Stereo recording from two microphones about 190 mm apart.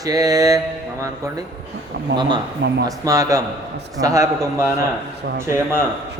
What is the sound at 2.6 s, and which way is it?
Speech, 60° right (ahead or behind).